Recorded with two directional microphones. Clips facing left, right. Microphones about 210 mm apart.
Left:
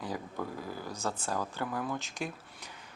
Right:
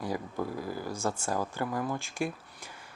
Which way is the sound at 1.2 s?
10° right (ahead or behind).